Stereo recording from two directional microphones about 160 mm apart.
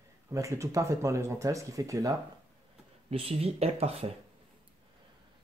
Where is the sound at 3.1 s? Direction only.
40° right (ahead or behind).